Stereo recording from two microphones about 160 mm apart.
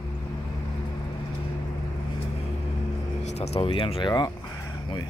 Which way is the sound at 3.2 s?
40° left (ahead or behind).